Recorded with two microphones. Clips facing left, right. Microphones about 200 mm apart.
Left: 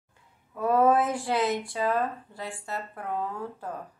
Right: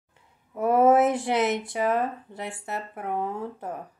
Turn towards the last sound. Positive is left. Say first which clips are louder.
# right 3 dB
turn(degrees=-20)  # may be behind; listen again after turning